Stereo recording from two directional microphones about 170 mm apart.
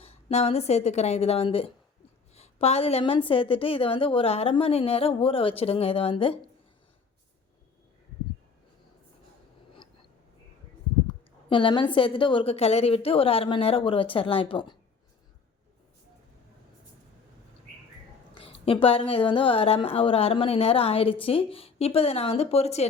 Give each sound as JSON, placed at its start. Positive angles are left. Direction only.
{"t": 0.0, "sound": "a woman's voice", "side_deg": 40}
{"t": 11.4, "sound": "a woman's voice", "side_deg": 30}
{"t": 18.3, "sound": "a woman's voice", "side_deg": 35}